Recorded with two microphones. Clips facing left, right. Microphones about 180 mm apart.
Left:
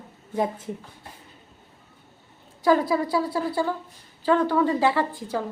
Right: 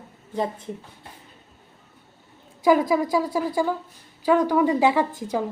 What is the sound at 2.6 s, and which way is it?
A woman's voice, 10° right (ahead or behind).